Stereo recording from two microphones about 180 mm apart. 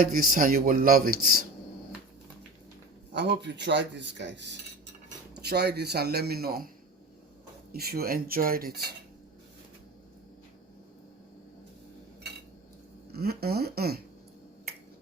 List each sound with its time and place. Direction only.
0.0 s speech: 50° right (ahead or behind)
3.1 s a man's voice: 75° right (ahead or behind)
5.4 s a man's voice: 65° right (ahead or behind)
7.7 s a man's voice: 60° right (ahead or behind)
13.1 s a man's voice: 60° right (ahead or behind)